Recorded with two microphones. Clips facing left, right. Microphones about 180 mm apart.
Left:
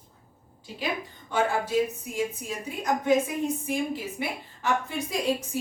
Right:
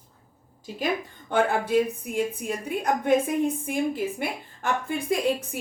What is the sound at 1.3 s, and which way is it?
A woman's voice, 55° right (ahead or behind).